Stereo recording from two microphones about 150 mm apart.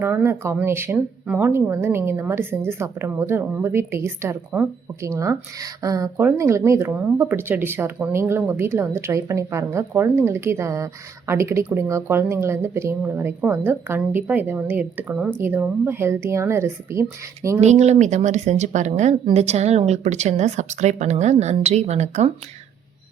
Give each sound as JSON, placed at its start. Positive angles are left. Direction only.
{"t": 0.0, "sound": "a woman's voice", "side_deg": -15}
{"t": 17.6, "sound": "a woman's voice", "side_deg": -50}